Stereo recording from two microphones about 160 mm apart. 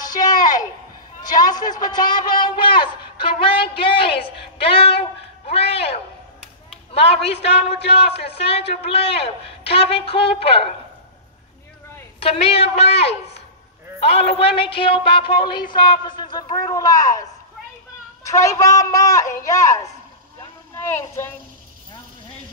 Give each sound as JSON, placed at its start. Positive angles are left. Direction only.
{"t": 1.4, "sound": "a man's voice", "side_deg": 25}
{"t": 12.2, "sound": "a man's voice", "side_deg": 40}
{"t": 18.3, "sound": "speech", "side_deg": 20}